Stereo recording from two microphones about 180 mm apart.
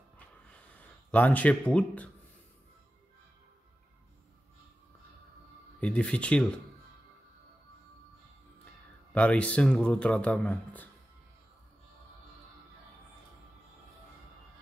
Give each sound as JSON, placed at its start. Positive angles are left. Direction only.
{"t": 0.5, "sound": "a sound", "side_deg": 10}
{"t": 5.8, "sound": "speech", "side_deg": 5}
{"t": 9.1, "sound": "speech", "side_deg": 5}